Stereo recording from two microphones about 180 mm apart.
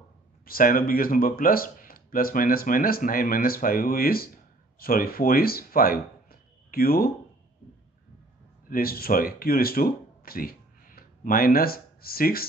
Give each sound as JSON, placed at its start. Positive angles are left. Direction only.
{"t": 0.5, "sound": "speech", "side_deg": 55}
{"t": 8.6, "sound": "speech", "side_deg": 55}